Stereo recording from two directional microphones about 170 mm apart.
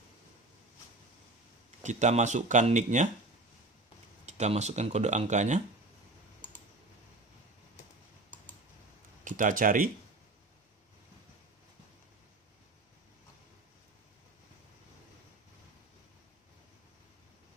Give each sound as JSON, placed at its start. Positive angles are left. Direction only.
{"t": 1.8, "sound": "speech", "side_deg": -45}
{"t": 4.3, "sound": "speech", "side_deg": -40}
{"t": 9.2, "sound": "speech", "side_deg": -50}